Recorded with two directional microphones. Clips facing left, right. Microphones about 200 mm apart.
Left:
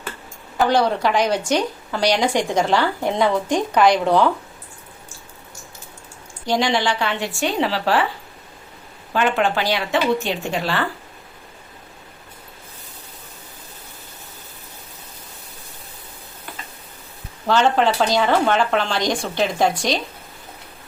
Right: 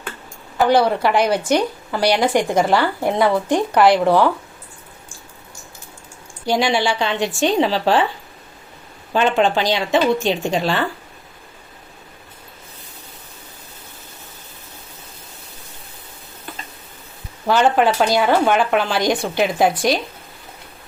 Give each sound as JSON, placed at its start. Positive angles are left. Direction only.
{"t": 0.6, "sound": "a woman's voice", "side_deg": -10}
{"t": 6.4, "sound": "a woman's voice", "side_deg": -10}
{"t": 9.1, "sound": "a woman's voice", "side_deg": -20}
{"t": 17.4, "sound": "a woman's voice", "side_deg": -10}